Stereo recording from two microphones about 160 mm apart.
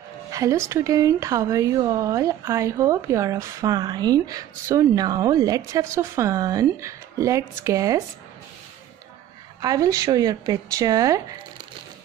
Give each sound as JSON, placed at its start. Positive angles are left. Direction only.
{"t": 0.3, "sound": "music", "side_deg": -20}
{"t": 0.7, "sound": "speech", "side_deg": -20}
{"t": 9.6, "sound": "speech", "side_deg": -25}